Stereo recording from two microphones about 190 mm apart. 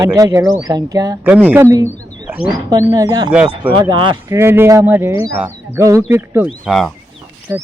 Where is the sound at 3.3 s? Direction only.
5° right (ahead or behind).